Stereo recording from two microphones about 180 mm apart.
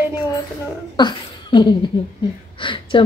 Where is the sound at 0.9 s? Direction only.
25° left (ahead or behind).